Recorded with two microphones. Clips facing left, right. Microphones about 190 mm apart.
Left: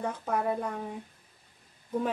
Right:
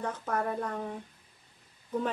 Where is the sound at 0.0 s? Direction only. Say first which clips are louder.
Left 2 dB; 10° left (ahead or behind).